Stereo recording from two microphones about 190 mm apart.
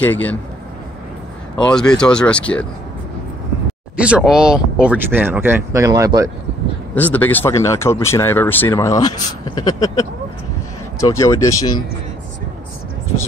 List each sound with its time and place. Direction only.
0.0 s speech: 10° left (ahead or behind)
1.7 s speech: 5° left (ahead or behind)
3.9 s speech: 5° right (ahead or behind)
7.0 s speech: 10° left (ahead or behind)